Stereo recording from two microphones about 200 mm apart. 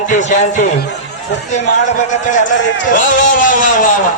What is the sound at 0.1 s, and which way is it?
Speech, 35° left (ahead or behind).